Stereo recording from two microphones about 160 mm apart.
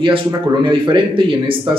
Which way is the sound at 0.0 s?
25° right (ahead or behind).